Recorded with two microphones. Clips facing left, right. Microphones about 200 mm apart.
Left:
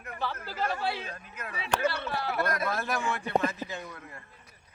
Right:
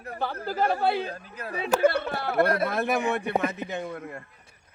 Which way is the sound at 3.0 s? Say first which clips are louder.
Right 6 dB; 20° right (ahead or behind).